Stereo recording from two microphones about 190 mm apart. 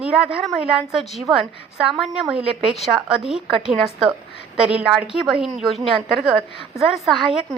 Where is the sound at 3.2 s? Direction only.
5° right (ahead or behind).